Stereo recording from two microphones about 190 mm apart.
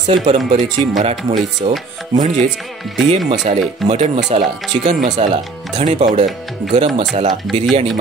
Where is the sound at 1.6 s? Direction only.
40° right (ahead or behind).